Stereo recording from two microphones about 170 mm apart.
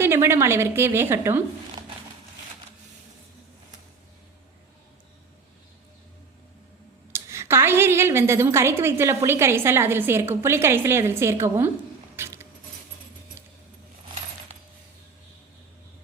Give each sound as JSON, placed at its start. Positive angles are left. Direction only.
{"t": 0.0, "sound": "a woman's voice", "side_deg": -15}
{"t": 7.1, "sound": "a woman's voice", "side_deg": -15}
{"t": 12.1, "sound": "keys jangling", "side_deg": -15}
{"t": 14.5, "sound": "a sound", "side_deg": -40}